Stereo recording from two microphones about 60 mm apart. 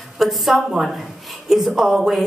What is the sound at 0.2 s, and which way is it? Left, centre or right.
A woman's voice, centre.